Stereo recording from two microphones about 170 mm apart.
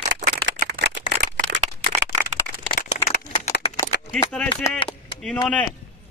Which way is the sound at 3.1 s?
40° left (ahead or behind).